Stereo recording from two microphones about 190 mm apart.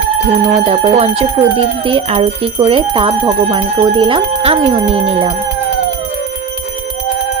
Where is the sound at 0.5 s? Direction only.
25° right (ahead or behind).